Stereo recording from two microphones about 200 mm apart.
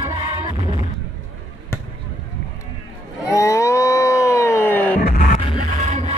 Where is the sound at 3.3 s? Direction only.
15° left (ahead or behind).